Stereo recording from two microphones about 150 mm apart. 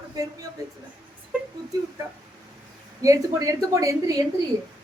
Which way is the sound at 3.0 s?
20° right (ahead or behind).